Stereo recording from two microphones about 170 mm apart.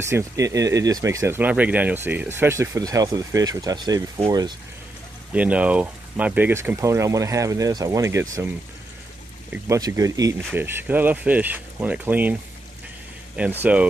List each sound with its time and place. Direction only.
0.0 s speech: 15° right (ahead or behind)
5.3 s speech: 5° right (ahead or behind)
9.5 s speech: 20° right (ahead or behind)
13.4 s speech: 10° right (ahead or behind)